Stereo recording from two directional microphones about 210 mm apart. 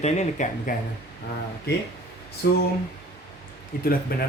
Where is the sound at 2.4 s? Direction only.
50° left (ahead or behind).